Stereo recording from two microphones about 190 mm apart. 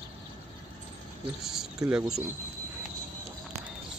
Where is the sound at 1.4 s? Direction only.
5° right (ahead or behind).